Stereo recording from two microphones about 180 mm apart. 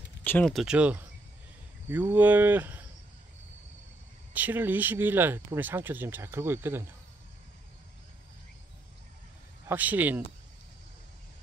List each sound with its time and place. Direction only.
0.2 s speech: 10° left (ahead or behind); by 2.8 s 10° right (ahead or behind)
4.3 s speech: 10° right (ahead or behind)
9.7 s speech: 10° right (ahead or behind)